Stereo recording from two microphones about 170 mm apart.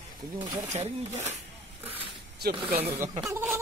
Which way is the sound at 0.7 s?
40° right (ahead or behind).